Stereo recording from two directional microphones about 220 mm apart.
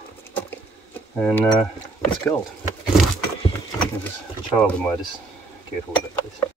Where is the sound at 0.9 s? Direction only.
10° left (ahead or behind).